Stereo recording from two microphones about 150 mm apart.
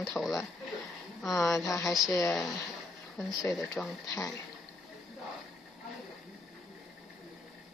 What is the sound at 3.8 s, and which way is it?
Speech, 5° left (ahead or behind).